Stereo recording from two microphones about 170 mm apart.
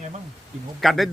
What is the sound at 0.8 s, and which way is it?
Speech, centre (ahead or behind).